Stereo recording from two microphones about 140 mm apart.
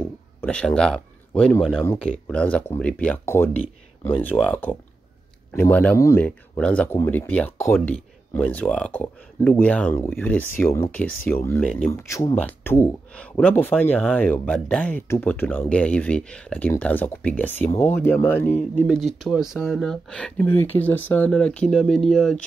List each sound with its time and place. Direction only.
0.0 s speech: 10° left (ahead or behind)
6.2 s speech: 10° left (ahead or behind)
17.6 s speech: 50° left (ahead or behind)
17.9 s speech: 15° left (ahead or behind)
18.9 s speech: centre (ahead or behind)